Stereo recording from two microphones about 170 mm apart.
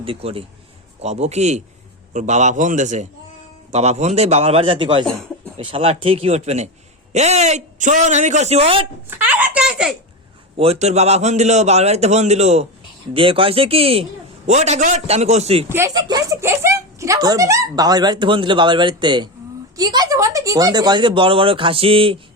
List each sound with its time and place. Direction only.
0.0 s a man's voice: 35° right (ahead or behind)
9.0 s a sound: 10° right (ahead or behind)
10.6 s a man's voice: 40° right (ahead or behind)
15.7 s speech: 20° right (ahead or behind)